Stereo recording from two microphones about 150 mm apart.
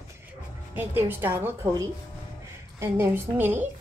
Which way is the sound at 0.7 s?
15° right (ahead or behind).